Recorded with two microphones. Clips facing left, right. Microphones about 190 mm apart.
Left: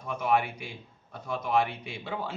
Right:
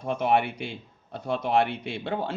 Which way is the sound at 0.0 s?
65° right (ahead or behind).